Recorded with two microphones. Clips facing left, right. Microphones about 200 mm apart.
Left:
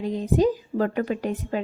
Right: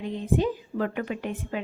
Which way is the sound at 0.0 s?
40° left (ahead or behind).